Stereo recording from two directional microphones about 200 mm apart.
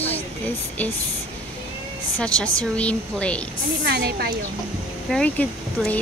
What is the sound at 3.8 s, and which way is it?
Speech, 50° right (ahead or behind).